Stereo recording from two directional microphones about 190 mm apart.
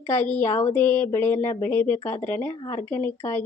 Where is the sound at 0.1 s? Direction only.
10° left (ahead or behind).